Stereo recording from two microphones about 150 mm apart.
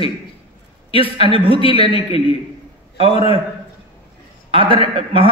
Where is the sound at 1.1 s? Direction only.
35° right (ahead or behind).